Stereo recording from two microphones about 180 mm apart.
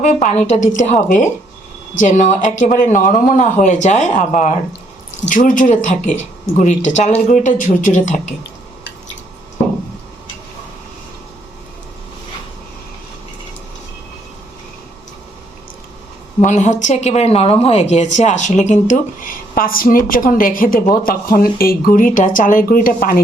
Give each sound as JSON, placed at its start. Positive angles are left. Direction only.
{"t": 0.0, "sound": "a woman's voice", "side_deg": 40}
{"t": 16.4, "sound": "a woman's voice", "side_deg": 40}